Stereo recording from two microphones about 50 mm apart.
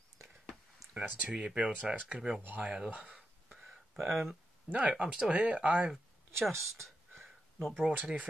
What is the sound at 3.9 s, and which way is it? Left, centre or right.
Speech, centre.